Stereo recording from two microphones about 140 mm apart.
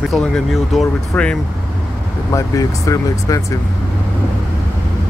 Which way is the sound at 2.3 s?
25° left (ahead or behind).